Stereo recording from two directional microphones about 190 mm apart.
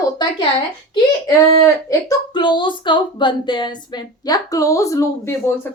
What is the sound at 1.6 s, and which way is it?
Speech, 15° left (ahead or behind).